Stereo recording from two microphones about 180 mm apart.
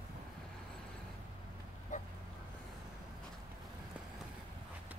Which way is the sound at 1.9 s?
45° left (ahead or behind).